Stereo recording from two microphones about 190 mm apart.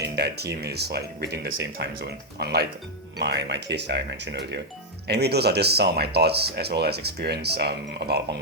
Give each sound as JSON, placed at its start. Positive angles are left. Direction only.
{"t": 0.0, "sound": "speech", "side_deg": -55}